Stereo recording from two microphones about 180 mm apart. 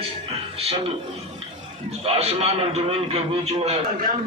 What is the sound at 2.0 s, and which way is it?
A man's voice, 35° right (ahead or behind).